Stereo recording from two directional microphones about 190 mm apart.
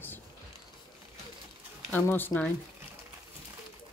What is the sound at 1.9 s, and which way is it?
Speech, 10° left (ahead or behind).